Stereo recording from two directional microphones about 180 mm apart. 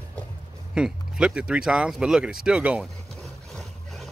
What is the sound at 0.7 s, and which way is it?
Speech, 5° right (ahead or behind).